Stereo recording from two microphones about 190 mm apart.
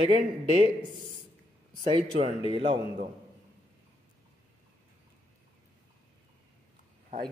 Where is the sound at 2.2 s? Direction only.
25° right (ahead or behind).